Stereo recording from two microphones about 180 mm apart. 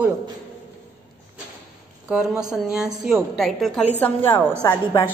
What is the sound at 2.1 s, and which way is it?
A woman's voice, 5° right (ahead or behind).